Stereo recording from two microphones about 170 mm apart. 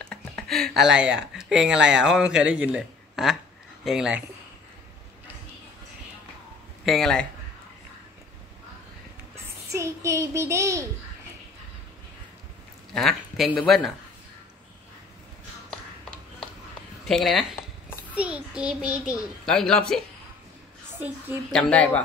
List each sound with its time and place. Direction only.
0.0 s a child's voice: 5° left (ahead or behind)
6.9 s a child's voice: 5° left (ahead or behind)
9.7 s a child's voice: 15° right (ahead or behind)
12.9 s a child's voice: centre (ahead or behind)
17.0 s a child's voice: centre (ahead or behind)
21.5 s speech: 5° left (ahead or behind)